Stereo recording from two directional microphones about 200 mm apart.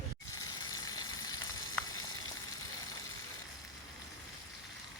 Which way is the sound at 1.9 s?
90° left.